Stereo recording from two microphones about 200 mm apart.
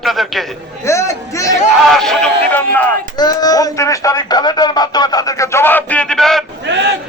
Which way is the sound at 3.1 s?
20° left (ahead or behind).